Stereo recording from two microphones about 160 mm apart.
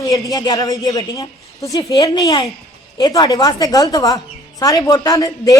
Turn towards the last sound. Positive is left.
turn(degrees=20)  # may be behind; listen again after turning